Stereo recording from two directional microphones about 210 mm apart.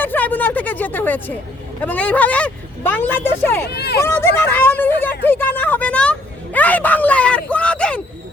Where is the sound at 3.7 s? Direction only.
50° left (ahead or behind).